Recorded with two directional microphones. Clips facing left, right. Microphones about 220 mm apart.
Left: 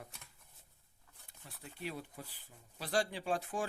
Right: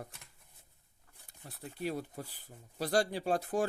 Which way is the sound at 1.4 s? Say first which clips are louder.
Right 7 dB; 40° right (ahead or behind).